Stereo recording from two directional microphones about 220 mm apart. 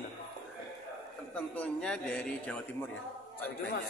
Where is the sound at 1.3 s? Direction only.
5° left (ahead or behind).